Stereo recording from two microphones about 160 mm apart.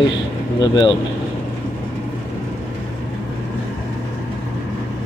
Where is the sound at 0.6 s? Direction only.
25° left (ahead or behind).